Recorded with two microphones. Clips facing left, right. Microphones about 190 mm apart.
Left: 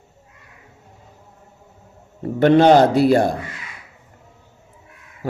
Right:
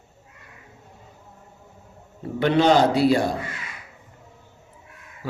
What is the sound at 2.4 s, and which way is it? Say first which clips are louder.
Speech: left 6 dB; 50° left (ahead or behind).